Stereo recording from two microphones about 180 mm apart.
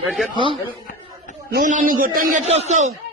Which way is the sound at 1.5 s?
50° right (ahead or behind).